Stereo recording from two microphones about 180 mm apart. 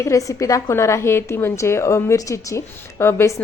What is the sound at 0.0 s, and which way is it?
A woman's voice, 20° left (ahead or behind).